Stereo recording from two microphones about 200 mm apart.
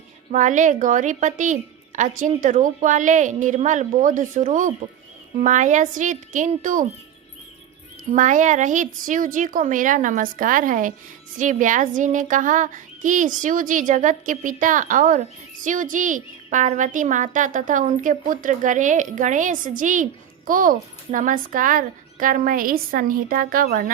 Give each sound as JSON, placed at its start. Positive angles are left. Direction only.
{"t": 0.3, "sound": "speech", "side_deg": -40}
{"t": 8.1, "sound": "speech", "side_deg": -40}